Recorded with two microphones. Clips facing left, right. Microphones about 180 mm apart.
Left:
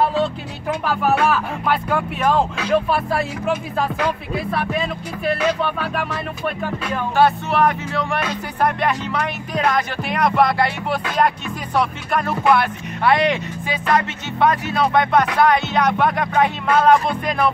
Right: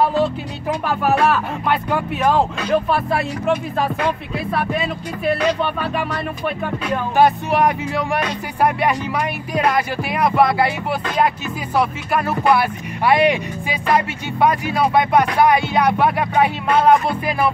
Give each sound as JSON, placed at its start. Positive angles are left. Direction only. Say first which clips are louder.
{"t": 0.1, "sound": "music", "louder": "right 2 dB", "side_deg": 0}
{"t": 7.2, "sound": "speech", "louder": "right 1 dB", "side_deg": -15}